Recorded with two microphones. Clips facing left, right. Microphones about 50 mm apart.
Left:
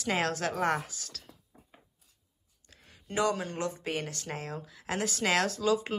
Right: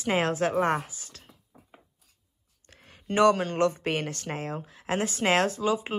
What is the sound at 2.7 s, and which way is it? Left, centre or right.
Speech, right.